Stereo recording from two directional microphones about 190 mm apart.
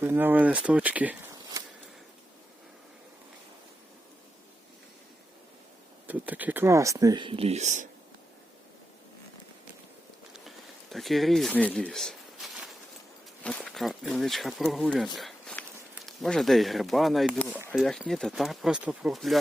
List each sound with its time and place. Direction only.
0.0 s speech: 10° right (ahead or behind)
6.1 s speech: 10° right (ahead or behind); by 7.9 s 40° right (ahead or behind)
10.9 s speech: centre (ahead or behind)